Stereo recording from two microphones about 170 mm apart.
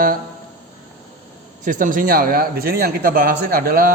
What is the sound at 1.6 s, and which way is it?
A man's voice, 50° right (ahead or behind).